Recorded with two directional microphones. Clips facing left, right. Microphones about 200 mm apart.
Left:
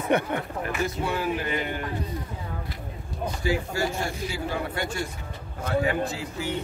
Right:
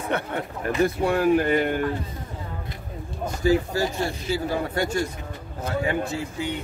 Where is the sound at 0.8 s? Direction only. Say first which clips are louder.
Right 9 dB; 55° right (ahead or behind).